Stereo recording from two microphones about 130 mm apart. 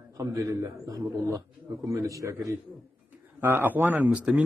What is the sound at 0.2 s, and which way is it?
A man's voice, 25° right (ahead or behind).